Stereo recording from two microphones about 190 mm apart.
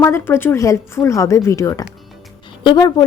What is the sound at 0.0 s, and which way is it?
A woman's voice, 15° left (ahead or behind).